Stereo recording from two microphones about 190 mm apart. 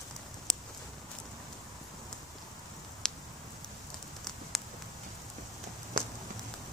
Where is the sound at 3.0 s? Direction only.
Centre (ahead or behind).